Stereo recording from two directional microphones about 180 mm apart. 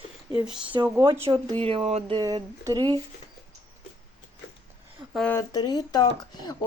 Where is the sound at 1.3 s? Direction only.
30° right (ahead or behind).